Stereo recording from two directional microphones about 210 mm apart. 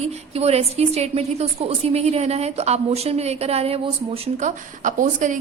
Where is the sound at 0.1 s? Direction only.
30° right (ahead or behind).